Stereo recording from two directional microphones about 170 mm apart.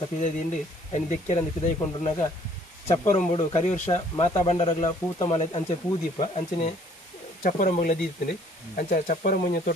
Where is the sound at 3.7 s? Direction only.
35° left (ahead or behind).